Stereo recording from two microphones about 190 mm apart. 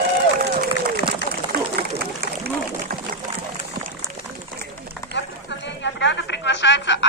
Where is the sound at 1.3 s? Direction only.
55° right (ahead or behind).